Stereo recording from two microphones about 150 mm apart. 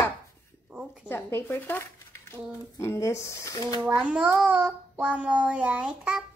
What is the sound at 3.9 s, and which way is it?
A child's voice, 5° right (ahead or behind).